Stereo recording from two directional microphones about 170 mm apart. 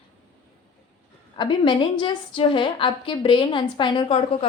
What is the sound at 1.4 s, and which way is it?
A woman's voice, 25° left (ahead or behind).